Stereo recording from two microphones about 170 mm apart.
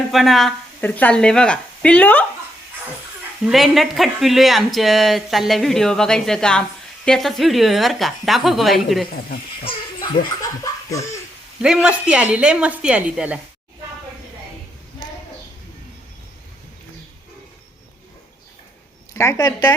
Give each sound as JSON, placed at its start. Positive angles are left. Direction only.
{"t": 0.1, "sound": "a woman's voice", "side_deg": 0}
{"t": 3.4, "sound": "speech", "side_deg": 0}
{"t": 9.6, "sound": "laughter", "side_deg": 25}
{"t": 11.6, "sound": "a woman's voice", "side_deg": -5}
{"t": 19.1, "sound": "a woman's voice", "side_deg": 15}